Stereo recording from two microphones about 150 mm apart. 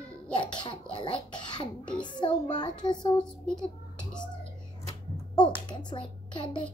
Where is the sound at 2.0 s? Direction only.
30° left (ahead or behind).